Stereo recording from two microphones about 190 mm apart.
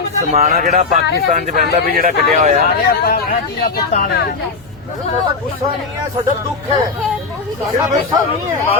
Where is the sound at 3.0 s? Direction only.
50° left (ahead or behind).